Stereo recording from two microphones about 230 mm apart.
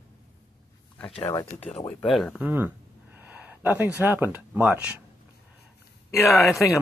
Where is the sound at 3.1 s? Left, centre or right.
Centre.